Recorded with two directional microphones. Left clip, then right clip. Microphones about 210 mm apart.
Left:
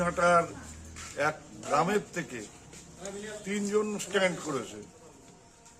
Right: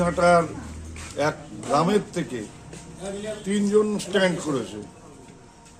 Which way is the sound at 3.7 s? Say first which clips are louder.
Right 8 dB; 5° right (ahead or behind).